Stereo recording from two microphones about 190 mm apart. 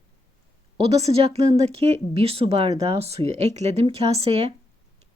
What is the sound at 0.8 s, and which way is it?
Speech, 35° right (ahead or behind).